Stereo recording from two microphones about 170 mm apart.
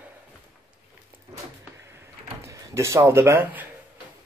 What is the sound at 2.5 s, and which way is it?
Speech, 15° right (ahead or behind).